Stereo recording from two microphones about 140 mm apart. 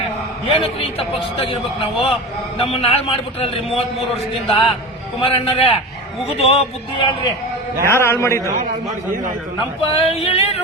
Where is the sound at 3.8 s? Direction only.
Centre (ahead or behind).